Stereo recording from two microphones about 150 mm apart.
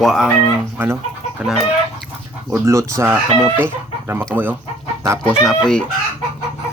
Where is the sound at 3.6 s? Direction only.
15° right (ahead or behind).